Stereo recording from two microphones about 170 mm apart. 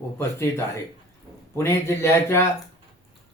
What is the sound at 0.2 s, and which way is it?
Speech, 15° left (ahead or behind).